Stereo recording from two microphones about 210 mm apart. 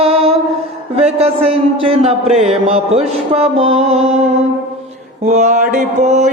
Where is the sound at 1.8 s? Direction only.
30° right (ahead or behind).